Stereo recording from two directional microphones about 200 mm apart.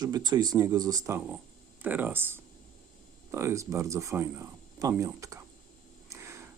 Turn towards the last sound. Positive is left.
turn(degrees=-15)  # may be behind; listen again after turning